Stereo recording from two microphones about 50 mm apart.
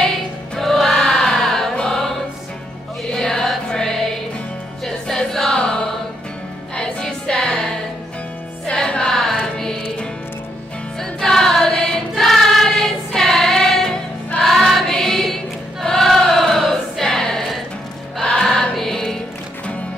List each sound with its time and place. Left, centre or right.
0.6 s music: centre
1.8 s choir: centre
3.1 s music: centre
6.8 s music: centre
8.7 s music: centre
9.1 s carnatic music: centre
11.0 s choir: centre
18.8 s music: centre